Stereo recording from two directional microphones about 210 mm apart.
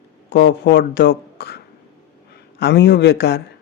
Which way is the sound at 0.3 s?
55° left (ahead or behind).